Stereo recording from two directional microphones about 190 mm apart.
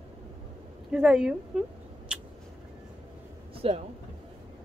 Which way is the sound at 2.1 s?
5° right (ahead or behind).